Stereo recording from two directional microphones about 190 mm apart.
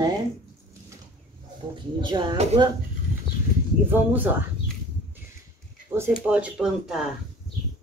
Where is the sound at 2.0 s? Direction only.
25° right (ahead or behind).